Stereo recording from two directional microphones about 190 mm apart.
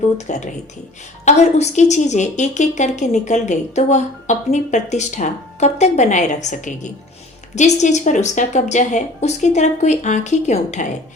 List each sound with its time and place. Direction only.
0.3 s a woman's voice: 40° left (ahead or behind)